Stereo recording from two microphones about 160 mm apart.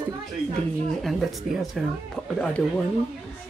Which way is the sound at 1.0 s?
Centre (ahead or behind).